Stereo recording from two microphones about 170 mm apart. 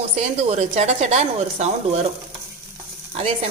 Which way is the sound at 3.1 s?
40° right (ahead or behind).